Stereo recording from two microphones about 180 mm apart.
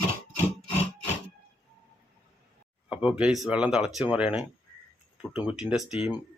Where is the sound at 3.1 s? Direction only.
5° right (ahead or behind).